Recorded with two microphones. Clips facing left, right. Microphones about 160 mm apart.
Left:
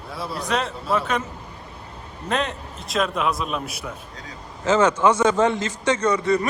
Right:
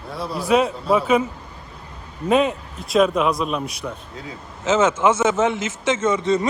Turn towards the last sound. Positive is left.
turn(degrees=-20)  # may be behind; listen again after turning